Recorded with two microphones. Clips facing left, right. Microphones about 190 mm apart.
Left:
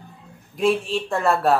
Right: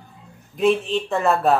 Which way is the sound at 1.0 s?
5° right (ahead or behind).